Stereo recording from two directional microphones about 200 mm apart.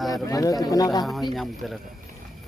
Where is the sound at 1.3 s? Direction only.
Centre (ahead or behind).